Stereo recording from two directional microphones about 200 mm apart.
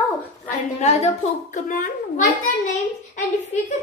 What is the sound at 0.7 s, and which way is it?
A child's voice, 35° left (ahead or behind).